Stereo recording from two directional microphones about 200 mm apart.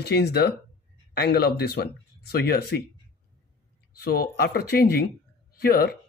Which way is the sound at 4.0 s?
50° left (ahead or behind).